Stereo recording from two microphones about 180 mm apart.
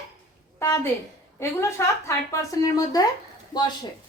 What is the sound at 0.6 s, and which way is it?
A woman's voice, 15° left (ahead or behind).